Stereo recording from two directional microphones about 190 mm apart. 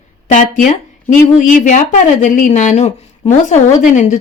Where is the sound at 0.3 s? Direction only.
40° left (ahead or behind).